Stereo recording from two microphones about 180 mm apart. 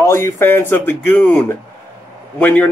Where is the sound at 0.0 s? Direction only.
15° left (ahead or behind).